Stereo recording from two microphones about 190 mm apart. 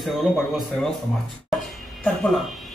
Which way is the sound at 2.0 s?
5° left (ahead or behind).